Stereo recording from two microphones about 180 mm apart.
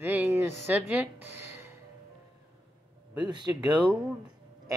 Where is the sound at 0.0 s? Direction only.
10° right (ahead or behind).